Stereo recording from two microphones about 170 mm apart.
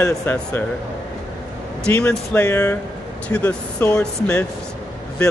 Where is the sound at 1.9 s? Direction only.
10° left (ahead or behind).